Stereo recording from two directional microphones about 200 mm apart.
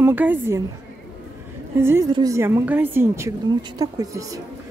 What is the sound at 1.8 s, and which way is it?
Speech, 10° right (ahead or behind).